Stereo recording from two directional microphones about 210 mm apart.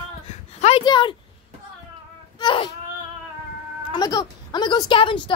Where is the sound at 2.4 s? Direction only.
25° left (ahead or behind).